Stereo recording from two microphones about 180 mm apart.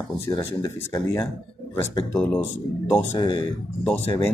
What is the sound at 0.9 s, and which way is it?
Speech, 15° left (ahead or behind).